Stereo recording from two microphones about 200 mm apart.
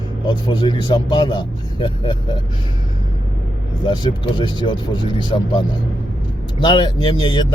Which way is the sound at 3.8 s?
20° left (ahead or behind).